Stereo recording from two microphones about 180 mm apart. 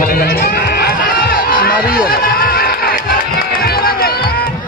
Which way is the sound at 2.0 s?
55° left (ahead or behind).